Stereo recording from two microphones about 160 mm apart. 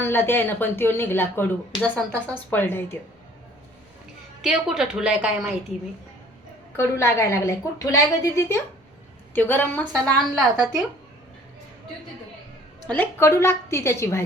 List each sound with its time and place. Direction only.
0.0 s speech: 15° left (ahead or behind)
4.4 s a woman's voice: 5° right (ahead or behind)
6.7 s speech: 15° left (ahead or behind)
12.9 s speech: 10° left (ahead or behind)